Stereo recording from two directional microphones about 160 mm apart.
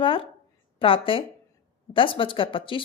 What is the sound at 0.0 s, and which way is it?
A woman's voice, 35° left (ahead or behind).